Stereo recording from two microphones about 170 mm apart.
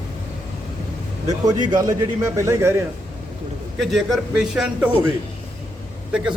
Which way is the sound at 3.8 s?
Centre (ahead or behind).